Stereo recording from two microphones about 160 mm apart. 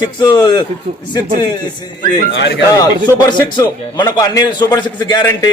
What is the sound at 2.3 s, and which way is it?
Speech, 90° left.